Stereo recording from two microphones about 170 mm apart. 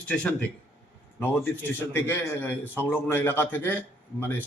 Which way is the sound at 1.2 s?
15° left (ahead or behind).